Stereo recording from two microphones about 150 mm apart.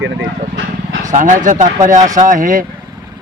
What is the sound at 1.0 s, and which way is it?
Speech, 60° right (ahead or behind).